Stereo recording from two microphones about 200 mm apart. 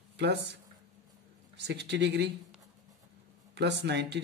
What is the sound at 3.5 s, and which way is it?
Speech, 60° right (ahead or behind).